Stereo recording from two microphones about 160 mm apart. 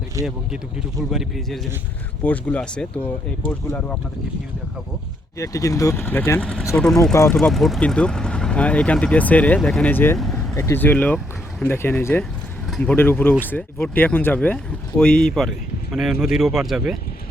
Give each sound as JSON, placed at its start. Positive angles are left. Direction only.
{"t": 0.2, "sound": "speech", "side_deg": -20}
{"t": 1.1, "sound": "speech", "side_deg": 0}
{"t": 5.4, "sound": "speech", "side_deg": 20}
{"t": 7.1, "sound": "speech", "side_deg": 15}
{"t": 7.3, "sound": "speech", "side_deg": 0}
{"t": 10.2, "sound": "vehicle", "side_deg": 5}
{"t": 10.5, "sound": "speech", "side_deg": 15}